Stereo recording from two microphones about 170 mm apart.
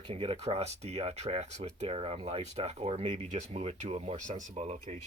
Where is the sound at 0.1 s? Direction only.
35° right (ahead or behind).